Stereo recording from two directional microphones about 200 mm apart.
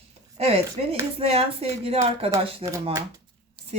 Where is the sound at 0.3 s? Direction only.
30° right (ahead or behind).